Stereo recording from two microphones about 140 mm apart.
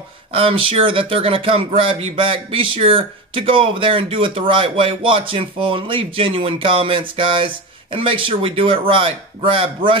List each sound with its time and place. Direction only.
0.3 s speech: 40° right (ahead or behind)